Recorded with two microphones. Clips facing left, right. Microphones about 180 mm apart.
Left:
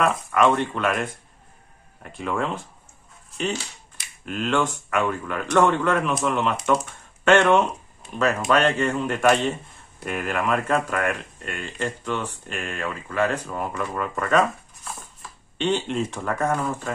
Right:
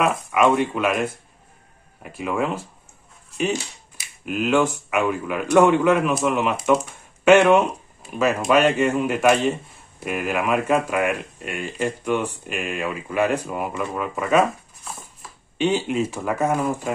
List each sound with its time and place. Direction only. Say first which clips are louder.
0.0 s speech: right 1 dB; 5° right (ahead or behind)
15.5 s speech: right 3 dB; 5° right (ahead or behind)